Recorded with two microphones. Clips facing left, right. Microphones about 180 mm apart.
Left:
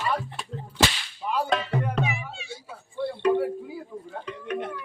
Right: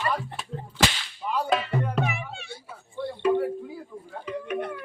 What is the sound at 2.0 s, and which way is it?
Music, 60° right (ahead or behind).